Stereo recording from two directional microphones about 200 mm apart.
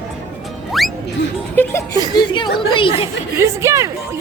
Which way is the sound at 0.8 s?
Centre (ahead or behind).